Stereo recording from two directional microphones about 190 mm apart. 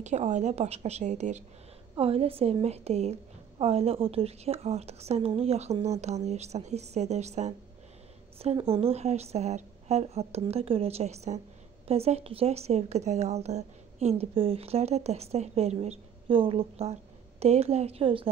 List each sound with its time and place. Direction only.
0.0 s speech: 40° right (ahead or behind)